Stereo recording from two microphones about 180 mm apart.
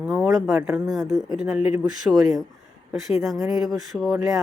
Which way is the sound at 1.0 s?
20° right (ahead or behind).